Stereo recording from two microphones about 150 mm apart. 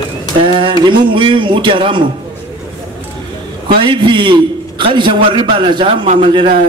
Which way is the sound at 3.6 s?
35° right (ahead or behind).